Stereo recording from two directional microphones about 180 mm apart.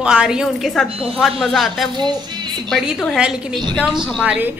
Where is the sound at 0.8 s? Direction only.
30° right (ahead or behind).